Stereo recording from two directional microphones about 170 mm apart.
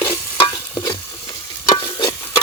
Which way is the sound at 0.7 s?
20° left (ahead or behind).